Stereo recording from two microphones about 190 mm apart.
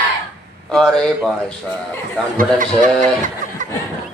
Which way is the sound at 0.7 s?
5° left (ahead or behind).